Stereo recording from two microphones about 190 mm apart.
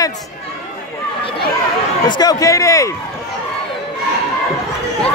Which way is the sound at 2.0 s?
20° left (ahead or behind).